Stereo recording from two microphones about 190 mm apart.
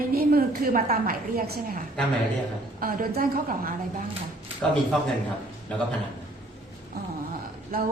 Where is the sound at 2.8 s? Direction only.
50° right (ahead or behind).